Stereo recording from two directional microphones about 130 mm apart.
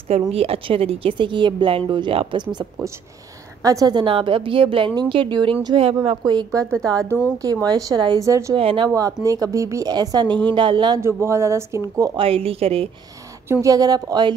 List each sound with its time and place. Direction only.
0.1 s a woman's voice: 50° right (ahead or behind); by 6.6 s 35° right (ahead or behind)
6.6 s a woman's voice: 5° left (ahead or behind)
6.9 s speech: 25° right (ahead or behind)
8.5 s a woman's voice: 45° right (ahead or behind)
8.8 s a woman's voice: 25° right (ahead or behind)
11.0 s speech: 20° right (ahead or behind)
12.2 s a woman's voice: 45° right (ahead or behind)
13.5 s speech: 25° right (ahead or behind)